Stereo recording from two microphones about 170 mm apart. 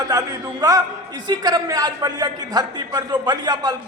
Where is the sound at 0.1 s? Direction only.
20° right (ahead or behind).